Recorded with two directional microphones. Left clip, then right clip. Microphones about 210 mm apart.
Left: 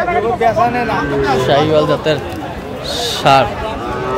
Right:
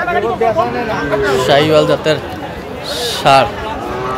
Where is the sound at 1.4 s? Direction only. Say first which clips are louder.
Right 3 dB; 10° right (ahead or behind).